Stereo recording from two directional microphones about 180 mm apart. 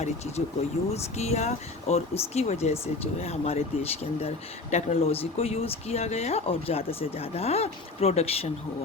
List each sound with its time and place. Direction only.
0.9 s speech: 35° left (ahead or behind)
4.7 s speech: 35° left (ahead or behind)